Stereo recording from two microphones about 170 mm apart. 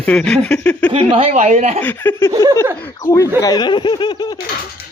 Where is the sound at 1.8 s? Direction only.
10° left (ahead or behind).